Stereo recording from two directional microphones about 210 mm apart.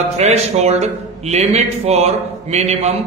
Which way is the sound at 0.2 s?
30° right (ahead or behind).